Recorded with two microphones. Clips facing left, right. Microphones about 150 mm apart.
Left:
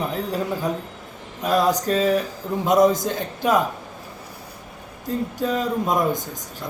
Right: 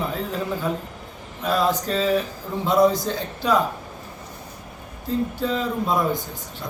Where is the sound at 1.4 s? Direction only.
15° left (ahead or behind).